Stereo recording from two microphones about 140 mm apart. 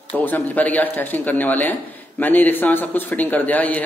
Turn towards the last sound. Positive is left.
turn(degrees=10)  # may be behind; listen again after turning